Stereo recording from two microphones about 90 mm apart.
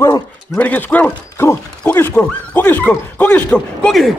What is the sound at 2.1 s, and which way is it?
Speech, 15° left (ahead or behind).